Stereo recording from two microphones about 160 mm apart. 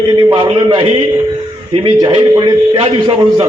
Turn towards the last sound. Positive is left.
turn(degrees=-35)  # may be behind; listen again after turning